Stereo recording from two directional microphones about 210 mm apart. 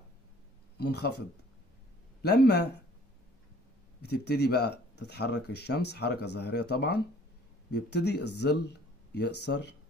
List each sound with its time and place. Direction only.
0.7 s speech: 50° left (ahead or behind)
2.2 s speech: 50° left (ahead or behind)
4.0 s speech: 50° left (ahead or behind)